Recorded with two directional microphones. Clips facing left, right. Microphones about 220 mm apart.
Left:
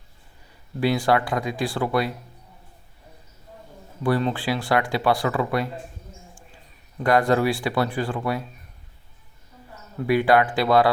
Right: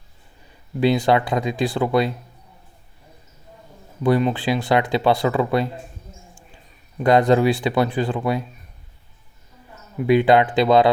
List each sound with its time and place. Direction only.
0.8 s speech: 20° right (ahead or behind)
4.0 s speech: 20° right (ahead or behind)
7.0 s speech: 20° right (ahead or behind)
10.0 s speech: 20° right (ahead or behind)